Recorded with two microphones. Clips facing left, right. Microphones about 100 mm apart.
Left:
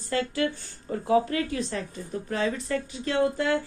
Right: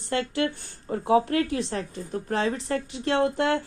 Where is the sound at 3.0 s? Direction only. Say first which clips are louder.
Right 2 dB; 65° right (ahead or behind).